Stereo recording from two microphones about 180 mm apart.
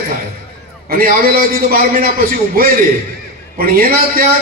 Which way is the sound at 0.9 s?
55° right (ahead or behind).